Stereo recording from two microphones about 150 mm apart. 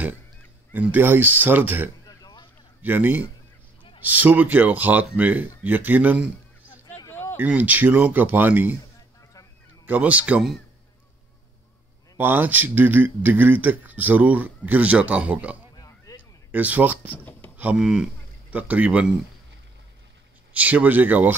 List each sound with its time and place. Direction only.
0.7 s speech: 10° right (ahead or behind)
2.0 s a sound: 25° left (ahead or behind)
2.8 s a man's voice: 10° right (ahead or behind)
7.0 s a sound: 15° left (ahead or behind)
7.3 s speech: 10° right (ahead or behind)
9.8 s speech: 10° right (ahead or behind)
12.2 s speech: 15° right (ahead or behind)
15.7 s a sound: 25° left (ahead or behind)
16.2 s speech: 10° right (ahead or behind)
17.2 s a sound: 10° left (ahead or behind)
17.6 s speech: 5° right (ahead or behind)
20.5 s speech: 10° right (ahead or behind)